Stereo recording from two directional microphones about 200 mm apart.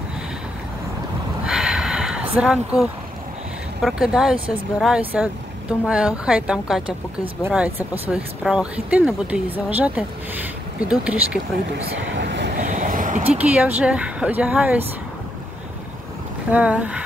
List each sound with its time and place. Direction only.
1.4 s a sound: 5° right (ahead or behind)
2.3 s speech: 5° right (ahead or behind)
12.2 s vehicle: 60° right (ahead or behind)
12.6 s vehicle: 40° right (ahead or behind)
13.3 s speech: 5° right (ahead or behind)
16.5 s speech: 5° right (ahead or behind)